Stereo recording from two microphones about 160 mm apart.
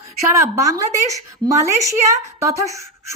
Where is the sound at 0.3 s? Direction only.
20° right (ahead or behind).